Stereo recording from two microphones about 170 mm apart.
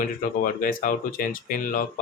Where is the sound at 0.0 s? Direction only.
55° left (ahead or behind).